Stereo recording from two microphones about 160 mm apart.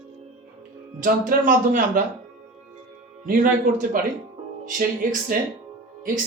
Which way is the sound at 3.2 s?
60° right (ahead or behind).